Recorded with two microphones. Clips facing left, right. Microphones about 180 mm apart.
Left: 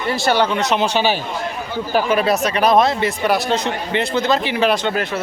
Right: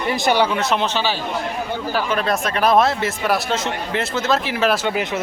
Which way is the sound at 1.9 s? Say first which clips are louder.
Left 5 dB; 15° left (ahead or behind).